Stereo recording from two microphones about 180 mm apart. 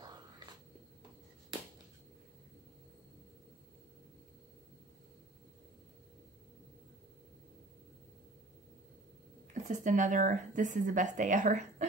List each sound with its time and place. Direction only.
9.5 s speech: 45° right (ahead or behind)